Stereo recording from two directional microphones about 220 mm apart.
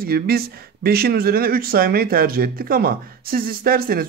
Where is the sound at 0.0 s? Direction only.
45° right (ahead or behind).